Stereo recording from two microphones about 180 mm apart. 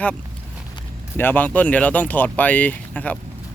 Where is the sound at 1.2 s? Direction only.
10° left (ahead or behind).